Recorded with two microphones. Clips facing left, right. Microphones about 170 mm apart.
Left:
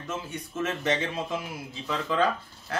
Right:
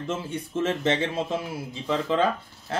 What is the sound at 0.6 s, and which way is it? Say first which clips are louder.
Speech: right 3 dB; 25° right (ahead or behind).